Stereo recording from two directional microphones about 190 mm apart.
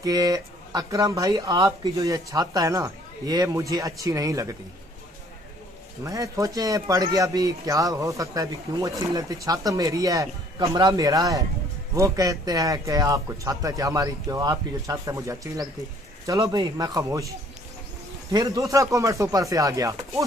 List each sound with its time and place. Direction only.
0.0 s speech: 20° right (ahead or behind)
6.0 s a man's voice: 15° right (ahead or behind)
18.3 s a man's voice: 20° right (ahead or behind)